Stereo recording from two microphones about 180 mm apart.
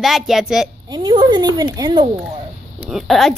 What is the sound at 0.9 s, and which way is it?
Speech, 25° right (ahead or behind).